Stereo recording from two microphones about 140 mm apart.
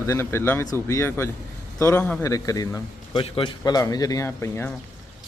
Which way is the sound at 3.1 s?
40° left (ahead or behind).